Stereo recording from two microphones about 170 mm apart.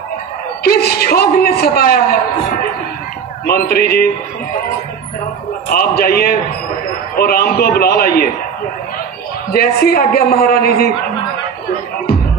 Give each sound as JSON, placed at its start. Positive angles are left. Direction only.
{"t": 0.6, "sound": "a man's voice", "side_deg": 65}
{"t": 3.4, "sound": "a man's voice", "side_deg": 65}
{"t": 5.7, "sound": "a man's voice", "side_deg": 65}
{"t": 9.5, "sound": "a man's voice", "side_deg": 65}